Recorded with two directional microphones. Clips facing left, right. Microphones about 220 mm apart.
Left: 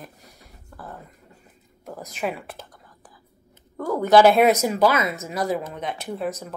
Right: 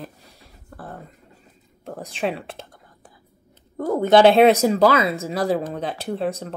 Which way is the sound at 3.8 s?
25° right (ahead or behind).